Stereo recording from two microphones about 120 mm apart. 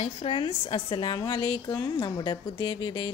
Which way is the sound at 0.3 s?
45° left (ahead or behind).